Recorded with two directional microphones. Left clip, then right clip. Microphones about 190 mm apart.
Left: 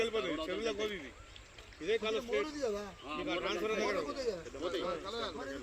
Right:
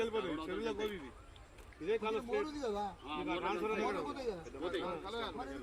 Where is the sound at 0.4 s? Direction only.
35° right (ahead or behind).